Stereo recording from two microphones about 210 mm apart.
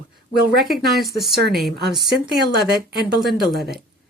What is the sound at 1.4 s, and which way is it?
Speech, 50° right (ahead or behind).